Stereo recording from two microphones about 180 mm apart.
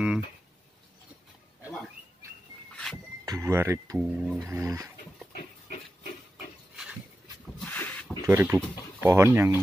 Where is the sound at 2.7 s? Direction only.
5° left (ahead or behind).